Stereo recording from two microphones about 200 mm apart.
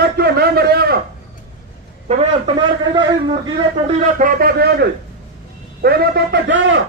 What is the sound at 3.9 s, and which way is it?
A man's voice, 35° right (ahead or behind).